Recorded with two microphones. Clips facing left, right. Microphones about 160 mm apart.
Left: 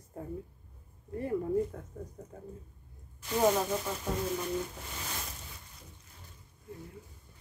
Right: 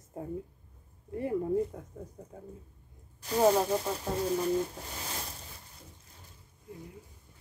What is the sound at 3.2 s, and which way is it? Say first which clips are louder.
Speech: right 3 dB; 35° right (ahead or behind).